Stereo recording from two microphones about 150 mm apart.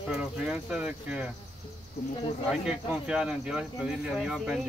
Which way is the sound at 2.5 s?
5° right (ahead or behind).